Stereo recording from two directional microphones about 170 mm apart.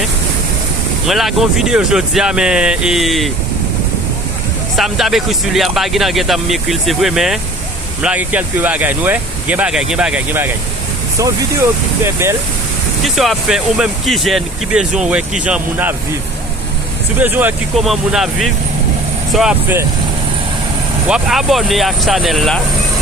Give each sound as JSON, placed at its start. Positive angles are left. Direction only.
{"t": 1.0, "sound": "speech", "side_deg": 0}
{"t": 4.8, "sound": "speech", "side_deg": 0}
{"t": 12.0, "sound": "speech", "side_deg": -15}
{"t": 13.1, "sound": "speech", "side_deg": 0}
{"t": 17.2, "sound": "speech", "side_deg": -10}
{"t": 21.1, "sound": "speech", "side_deg": 0}